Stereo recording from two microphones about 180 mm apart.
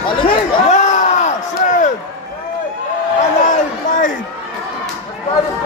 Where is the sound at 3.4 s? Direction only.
45° left (ahead or behind).